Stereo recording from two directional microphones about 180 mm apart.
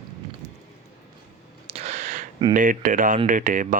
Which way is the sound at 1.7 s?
35° right (ahead or behind).